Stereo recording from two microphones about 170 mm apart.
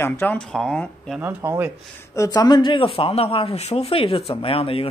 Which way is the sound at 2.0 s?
20° left (ahead or behind).